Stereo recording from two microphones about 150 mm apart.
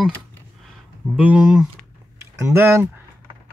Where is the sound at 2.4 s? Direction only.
15° right (ahead or behind).